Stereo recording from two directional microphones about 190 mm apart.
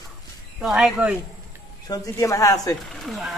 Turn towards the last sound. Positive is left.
turn(degrees=0)  # may be behind; listen again after turning